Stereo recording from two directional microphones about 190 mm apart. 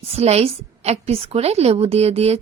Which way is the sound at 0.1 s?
35° right (ahead or behind).